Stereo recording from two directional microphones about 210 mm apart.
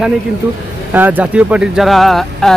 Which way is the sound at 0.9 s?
10° right (ahead or behind).